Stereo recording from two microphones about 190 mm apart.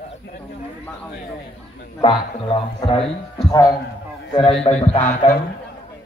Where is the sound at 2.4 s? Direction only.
30° left (ahead or behind).